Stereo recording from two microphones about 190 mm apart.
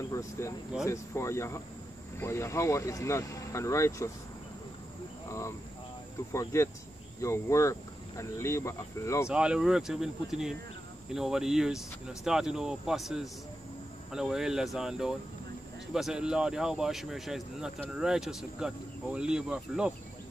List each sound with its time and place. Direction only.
0.1 s speech: 15° left (ahead or behind)
6.3 s speech: 15° left (ahead or behind)
9.3 s speech: 5° right (ahead or behind)